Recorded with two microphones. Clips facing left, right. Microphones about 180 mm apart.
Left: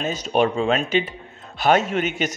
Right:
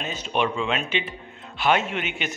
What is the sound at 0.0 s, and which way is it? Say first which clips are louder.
A man's voice: left 5 dB; 40° left (ahead or behind).